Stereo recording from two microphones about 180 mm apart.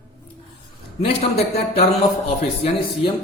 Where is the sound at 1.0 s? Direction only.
35° left (ahead or behind).